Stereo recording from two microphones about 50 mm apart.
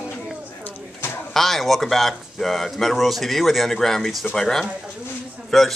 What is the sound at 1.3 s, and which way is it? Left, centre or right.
Speech, centre.